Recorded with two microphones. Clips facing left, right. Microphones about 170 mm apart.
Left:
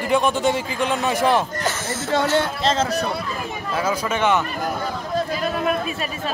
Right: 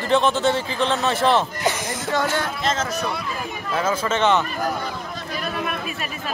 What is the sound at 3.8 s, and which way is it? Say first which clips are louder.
Speech: right 1 dB; 10° left (ahead or behind).